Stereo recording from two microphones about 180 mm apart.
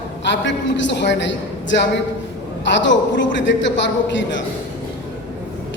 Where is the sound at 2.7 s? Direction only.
90° left.